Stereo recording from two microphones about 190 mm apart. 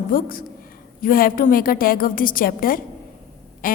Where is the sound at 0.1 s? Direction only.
50° left (ahead or behind).